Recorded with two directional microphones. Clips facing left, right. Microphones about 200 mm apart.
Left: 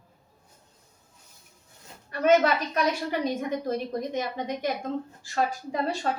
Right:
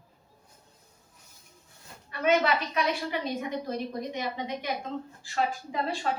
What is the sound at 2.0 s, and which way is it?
A woman's voice, 45° left (ahead or behind).